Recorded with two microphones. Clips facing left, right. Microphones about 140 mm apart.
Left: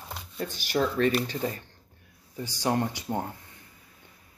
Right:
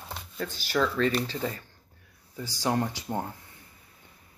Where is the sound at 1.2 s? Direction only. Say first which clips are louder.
Left 1 dB; 15° left (ahead or behind).